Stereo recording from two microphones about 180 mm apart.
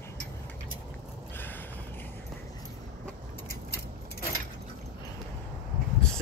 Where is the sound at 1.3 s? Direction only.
10° left (ahead or behind).